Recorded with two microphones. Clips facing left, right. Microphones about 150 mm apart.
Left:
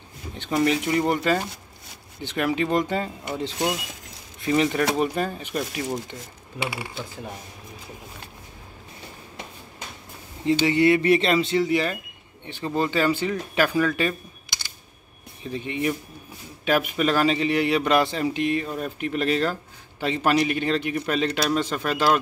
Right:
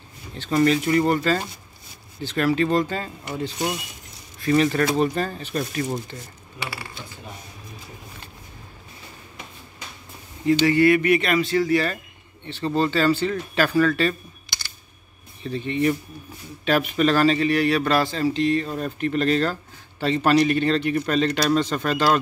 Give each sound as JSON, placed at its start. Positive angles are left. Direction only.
{"t": 0.3, "sound": "speech", "side_deg": 15}
{"t": 10.4, "sound": "speech", "side_deg": 20}